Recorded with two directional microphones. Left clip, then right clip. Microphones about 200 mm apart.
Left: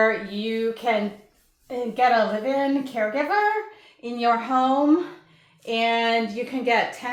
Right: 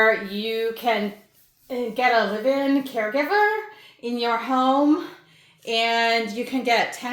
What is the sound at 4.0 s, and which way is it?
Speech, 60° right (ahead or behind).